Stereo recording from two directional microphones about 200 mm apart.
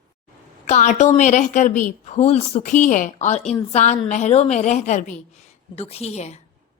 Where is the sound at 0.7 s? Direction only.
35° left (ahead or behind).